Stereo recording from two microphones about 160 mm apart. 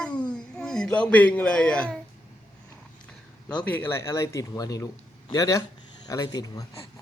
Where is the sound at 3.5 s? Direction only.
10° left (ahead or behind).